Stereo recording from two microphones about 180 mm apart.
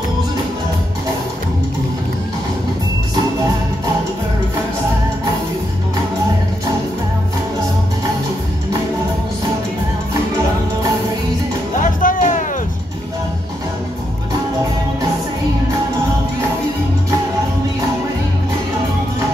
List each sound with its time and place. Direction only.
11.8 s music: 45° left (ahead or behind)